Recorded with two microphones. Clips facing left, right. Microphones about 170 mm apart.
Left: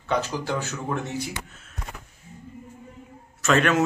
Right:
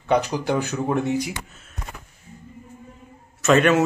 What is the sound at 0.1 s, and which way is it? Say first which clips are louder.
Speech: right 5 dB; 15° right (ahead or behind).